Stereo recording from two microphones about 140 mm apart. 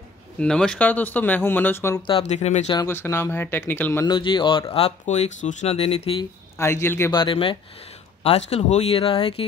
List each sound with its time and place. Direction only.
0.4 s speech: 5° left (ahead or behind)
2.0 s speech: 45° left (ahead or behind)
2.9 s speech: 15° left (ahead or behind)
4.0 s speech: 35° left (ahead or behind)
6.6 s speech: 20° left (ahead or behind)
7.1 s speech: 35° left (ahead or behind)